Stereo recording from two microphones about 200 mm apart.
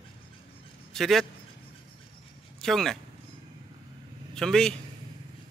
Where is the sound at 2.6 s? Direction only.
Centre (ahead or behind).